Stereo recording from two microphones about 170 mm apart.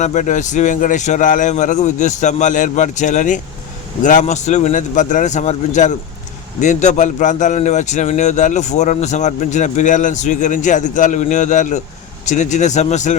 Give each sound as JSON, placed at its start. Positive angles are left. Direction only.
{"t": 0.0, "sound": "a man's voice", "side_deg": 45}